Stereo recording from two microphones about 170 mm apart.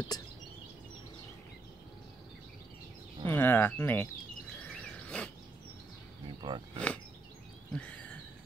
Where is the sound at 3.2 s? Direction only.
10° left (ahead or behind).